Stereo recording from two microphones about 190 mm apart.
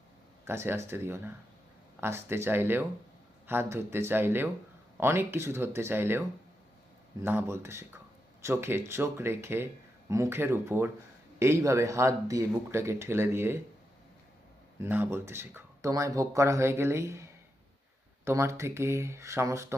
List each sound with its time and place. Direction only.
0.4 s speech: 15° right (ahead or behind)
14.8 s speech: 10° right (ahead or behind)
18.3 s speech: 15° right (ahead or behind)